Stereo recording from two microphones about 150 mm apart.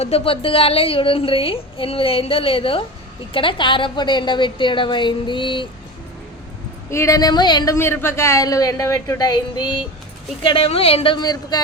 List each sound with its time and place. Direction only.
0.0 s a woman's voice: 40° left (ahead or behind)
6.9 s a woman's voice: 20° left (ahead or behind)